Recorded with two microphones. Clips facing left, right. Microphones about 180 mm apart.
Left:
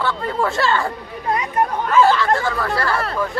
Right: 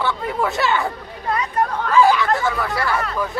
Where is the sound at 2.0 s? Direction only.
10° right (ahead or behind).